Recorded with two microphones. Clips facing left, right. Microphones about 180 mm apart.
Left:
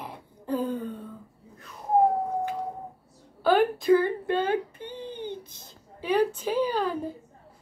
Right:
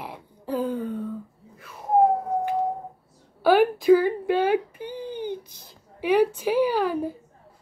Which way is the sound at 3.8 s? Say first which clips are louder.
Right 4 dB; 10° right (ahead or behind).